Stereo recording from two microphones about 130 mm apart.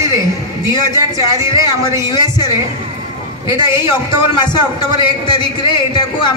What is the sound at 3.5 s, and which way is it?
A woman's voice, 35° left (ahead or behind).